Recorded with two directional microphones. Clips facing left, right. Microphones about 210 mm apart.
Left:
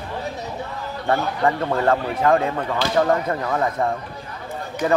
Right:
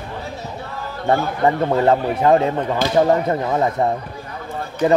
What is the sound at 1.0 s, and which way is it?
Speech, 20° right (ahead or behind).